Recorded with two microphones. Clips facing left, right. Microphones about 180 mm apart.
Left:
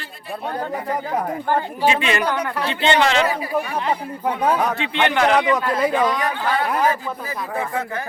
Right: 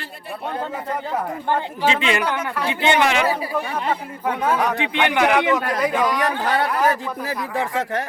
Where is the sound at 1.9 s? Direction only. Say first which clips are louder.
Even; 20° right (ahead or behind).